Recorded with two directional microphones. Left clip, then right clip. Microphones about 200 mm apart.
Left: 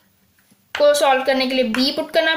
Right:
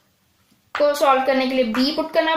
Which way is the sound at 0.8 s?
20° left (ahead or behind).